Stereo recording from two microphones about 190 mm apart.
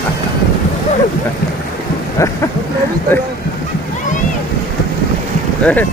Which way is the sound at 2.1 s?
15° left (ahead or behind).